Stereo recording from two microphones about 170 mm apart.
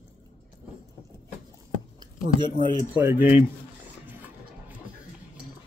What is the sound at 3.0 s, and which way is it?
Speech, 10° right (ahead or behind).